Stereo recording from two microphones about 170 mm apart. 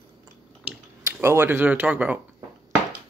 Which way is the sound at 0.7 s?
10° right (ahead or behind).